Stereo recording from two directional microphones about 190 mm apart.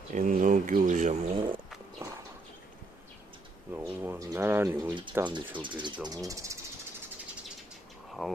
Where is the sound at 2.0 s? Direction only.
15° right (ahead or behind).